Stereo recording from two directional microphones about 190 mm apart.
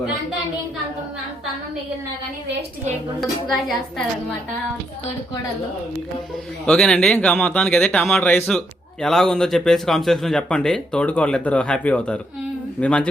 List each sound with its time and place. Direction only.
3.2 s speech: centre (ahead or behind)
6.7 s speech: 5° left (ahead or behind)